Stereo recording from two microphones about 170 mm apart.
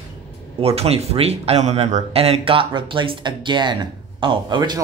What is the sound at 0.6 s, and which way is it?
Speech, 35° right (ahead or behind).